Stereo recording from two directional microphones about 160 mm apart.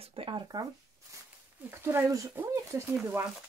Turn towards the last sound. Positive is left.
turn(degrees=-15)  # may be behind; listen again after turning